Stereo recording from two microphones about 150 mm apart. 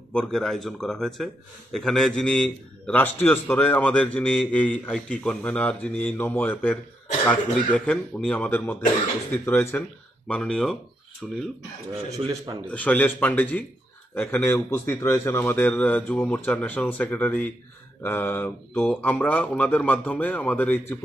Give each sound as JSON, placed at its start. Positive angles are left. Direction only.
{"t": 0.1, "sound": "a man's voice", "side_deg": 5}
{"t": 10.2, "sound": "speech", "side_deg": 5}
{"t": 12.2, "sound": "speech", "side_deg": -35}
{"t": 12.7, "sound": "a man's voice", "side_deg": 10}